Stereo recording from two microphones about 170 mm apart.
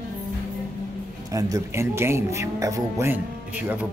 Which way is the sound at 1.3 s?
20° right (ahead or behind).